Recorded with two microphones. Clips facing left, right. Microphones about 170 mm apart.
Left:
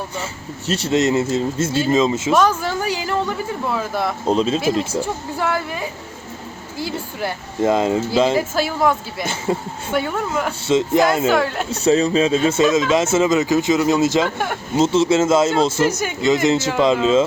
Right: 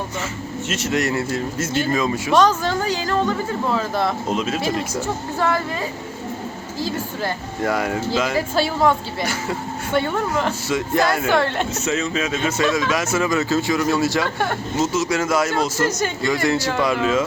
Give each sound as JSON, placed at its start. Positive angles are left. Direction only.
{"t": 0.7, "sound": "speech", "side_deg": 30}
{"t": 2.3, "sound": "a woman's voice", "side_deg": 5}
{"t": 4.3, "sound": "speech", "side_deg": 30}
{"t": 4.9, "sound": "a woman's voice", "side_deg": 10}
{"t": 7.6, "sound": "speech", "side_deg": 25}
{"t": 8.4, "sound": "speech", "side_deg": 5}
{"t": 10.7, "sound": "speech", "side_deg": 20}
{"t": 11.3, "sound": "speech", "side_deg": 5}
{"t": 11.7, "sound": "speech", "side_deg": 35}
{"t": 14.8, "sound": "speech", "side_deg": 25}
{"t": 15.8, "sound": "a woman's voice", "side_deg": 10}
{"t": 16.2, "sound": "speech", "side_deg": 20}